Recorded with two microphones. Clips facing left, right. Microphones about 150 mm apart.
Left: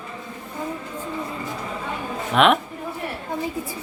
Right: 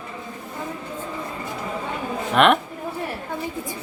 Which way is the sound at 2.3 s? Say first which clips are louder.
Even; centre (ahead or behind).